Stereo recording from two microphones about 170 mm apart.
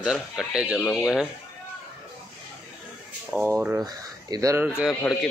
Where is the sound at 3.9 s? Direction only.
25° right (ahead or behind).